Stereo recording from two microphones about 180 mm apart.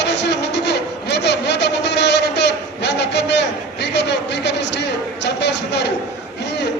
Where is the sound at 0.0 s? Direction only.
70° left (ahead or behind).